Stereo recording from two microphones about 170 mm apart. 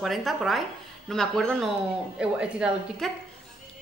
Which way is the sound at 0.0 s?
Centre (ahead or behind).